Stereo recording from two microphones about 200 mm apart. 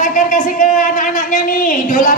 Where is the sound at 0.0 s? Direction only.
40° left (ahead or behind).